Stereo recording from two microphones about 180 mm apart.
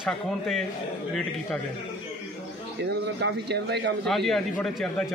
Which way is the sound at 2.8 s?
70° right (ahead or behind).